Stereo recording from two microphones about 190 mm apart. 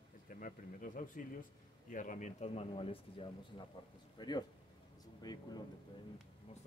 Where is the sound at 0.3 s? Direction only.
45° left (ahead or behind); by 5.6 s 20° left (ahead or behind).